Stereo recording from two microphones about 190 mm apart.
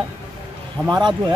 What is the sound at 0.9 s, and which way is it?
Speech, 20° right (ahead or behind).